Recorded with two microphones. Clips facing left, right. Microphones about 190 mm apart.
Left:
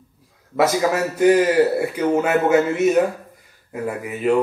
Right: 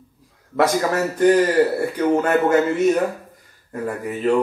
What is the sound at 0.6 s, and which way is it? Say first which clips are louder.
A man's voice: even; 5° left (ahead or behind).